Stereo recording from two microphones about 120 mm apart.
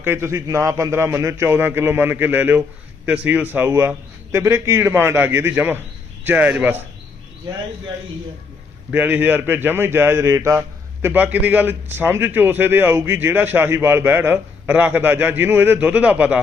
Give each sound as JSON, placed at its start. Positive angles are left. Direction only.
{"t": 0.0, "sound": "a man's voice", "side_deg": -20}
{"t": 8.9, "sound": "a man's voice", "side_deg": -15}